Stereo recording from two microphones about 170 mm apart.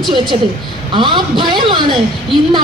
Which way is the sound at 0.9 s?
30° right (ahead or behind).